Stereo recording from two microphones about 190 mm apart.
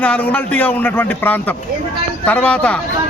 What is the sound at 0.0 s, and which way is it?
A man's voice, 5° left (ahead or behind).